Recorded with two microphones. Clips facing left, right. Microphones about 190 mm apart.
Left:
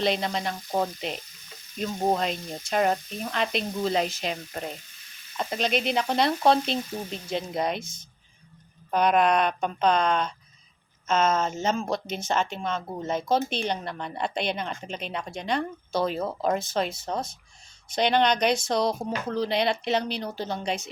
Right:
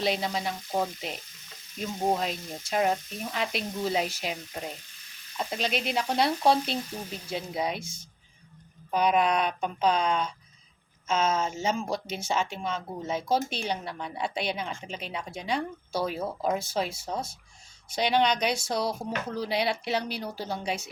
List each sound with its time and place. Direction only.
0.0 s speech: 5° right (ahead or behind)
2.1 s speech: 5° right (ahead or behind)
8.9 s a sound: 55° left (ahead or behind)
9.1 s speech: 5° right (ahead or behind)